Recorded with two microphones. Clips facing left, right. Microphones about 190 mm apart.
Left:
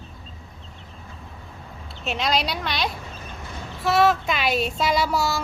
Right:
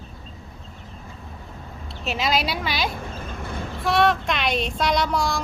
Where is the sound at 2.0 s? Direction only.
Centre (ahead or behind).